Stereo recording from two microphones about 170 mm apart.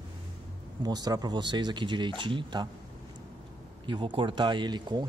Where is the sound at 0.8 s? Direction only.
25° right (ahead or behind).